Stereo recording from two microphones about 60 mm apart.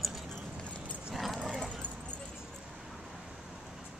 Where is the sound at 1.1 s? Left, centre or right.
Centre.